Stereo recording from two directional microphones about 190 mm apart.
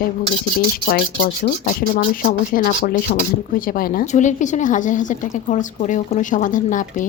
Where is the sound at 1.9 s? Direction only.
45° left (ahead or behind).